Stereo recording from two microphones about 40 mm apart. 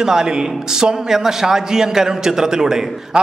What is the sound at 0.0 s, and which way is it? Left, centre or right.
A man's voice, centre.